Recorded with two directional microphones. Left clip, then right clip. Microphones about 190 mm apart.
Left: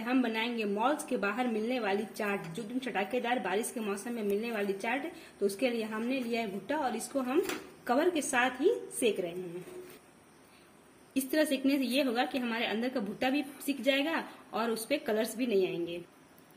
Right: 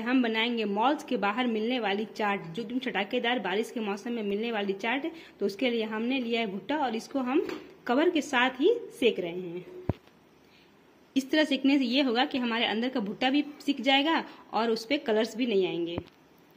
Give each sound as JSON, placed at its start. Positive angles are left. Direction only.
{"t": 0.0, "sound": "a woman's voice", "side_deg": -30}
{"t": 11.1, "sound": "a woman's voice", "side_deg": -35}